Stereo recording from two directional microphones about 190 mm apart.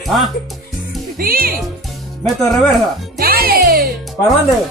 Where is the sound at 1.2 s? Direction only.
50° right (ahead or behind).